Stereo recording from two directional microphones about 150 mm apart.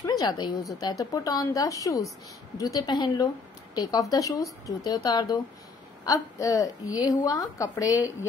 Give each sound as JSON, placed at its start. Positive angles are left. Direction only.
{"t": 0.0, "sound": "a woman's voice", "side_deg": 25}